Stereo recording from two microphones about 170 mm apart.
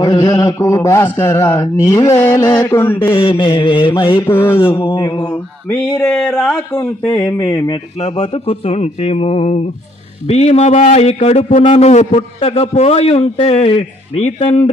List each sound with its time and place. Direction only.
0.0 s a man's voice: 25° left (ahead or behind)
3.2 s mantra: 30° left (ahead or behind)
4.3 s a man's voice: 15° left (ahead or behind)
4.8 s mantra: 30° left (ahead or behind)
5.9 s mantra: 20° left (ahead or behind)
6.1 s speech: 5° left (ahead or behind)
7.2 s mantra: 20° left (ahead or behind)
8.1 s a man's voice: 30° left (ahead or behind)